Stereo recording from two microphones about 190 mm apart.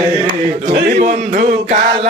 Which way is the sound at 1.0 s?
40° right (ahead or behind).